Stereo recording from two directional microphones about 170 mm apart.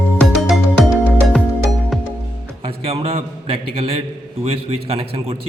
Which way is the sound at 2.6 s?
35° right (ahead or behind).